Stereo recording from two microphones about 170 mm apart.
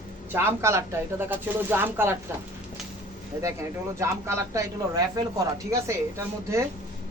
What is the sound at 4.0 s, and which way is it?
Speech, 15° right (ahead or behind).